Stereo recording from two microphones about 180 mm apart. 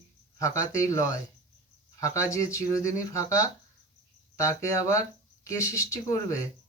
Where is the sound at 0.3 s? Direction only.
15° left (ahead or behind).